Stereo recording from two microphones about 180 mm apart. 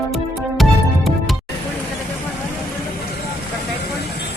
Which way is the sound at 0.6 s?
Centre (ahead or behind).